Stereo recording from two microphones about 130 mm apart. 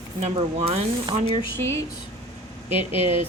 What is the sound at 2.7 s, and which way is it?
Speech, 60° right (ahead or behind).